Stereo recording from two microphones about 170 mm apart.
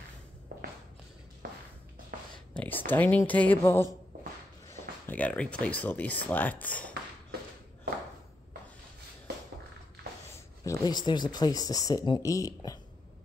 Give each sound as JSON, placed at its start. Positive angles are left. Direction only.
{"t": 1.4, "sound": "music", "side_deg": -60}
{"t": 2.5, "sound": "speech", "side_deg": 10}
{"t": 5.0, "sound": "speech", "side_deg": 10}
{"t": 10.6, "sound": "speech", "side_deg": 20}